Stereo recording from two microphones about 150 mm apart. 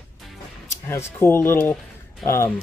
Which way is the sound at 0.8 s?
15° left (ahead or behind).